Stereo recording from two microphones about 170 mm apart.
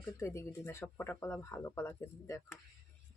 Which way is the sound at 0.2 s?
15° left (ahead or behind).